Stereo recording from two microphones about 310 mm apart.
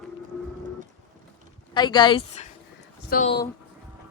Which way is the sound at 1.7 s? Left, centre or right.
Centre.